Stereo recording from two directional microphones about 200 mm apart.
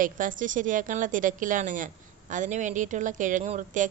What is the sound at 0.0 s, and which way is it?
Speech, 40° right (ahead or behind).